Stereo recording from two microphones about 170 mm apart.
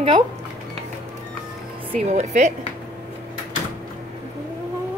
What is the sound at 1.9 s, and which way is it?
Speech, 40° right (ahead or behind).